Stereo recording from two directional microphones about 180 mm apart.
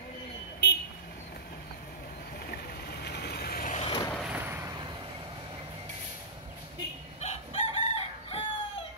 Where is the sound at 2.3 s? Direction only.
60° left (ahead or behind).